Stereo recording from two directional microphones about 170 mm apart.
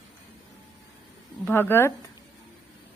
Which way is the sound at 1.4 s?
15° left (ahead or behind).